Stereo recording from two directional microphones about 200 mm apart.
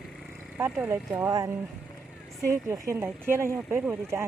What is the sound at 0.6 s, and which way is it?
Speech, 10° right (ahead or behind).